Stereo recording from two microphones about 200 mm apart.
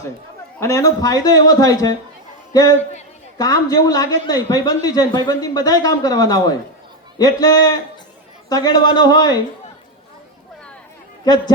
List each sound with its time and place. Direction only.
0.6 s a man's voice: 15° left (ahead or behind)